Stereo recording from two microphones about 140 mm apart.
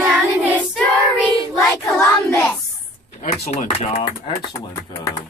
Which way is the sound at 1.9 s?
20° left (ahead or behind).